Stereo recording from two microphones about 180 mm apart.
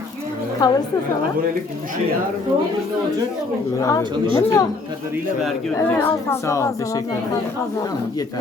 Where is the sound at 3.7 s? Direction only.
15° left (ahead or behind).